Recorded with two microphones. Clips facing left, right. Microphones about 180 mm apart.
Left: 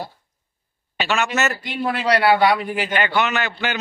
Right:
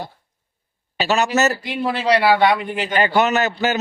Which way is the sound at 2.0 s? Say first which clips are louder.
Right 1 dB; centre (ahead or behind).